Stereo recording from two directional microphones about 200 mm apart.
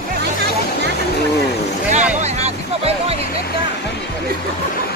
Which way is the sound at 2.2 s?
30° right (ahead or behind).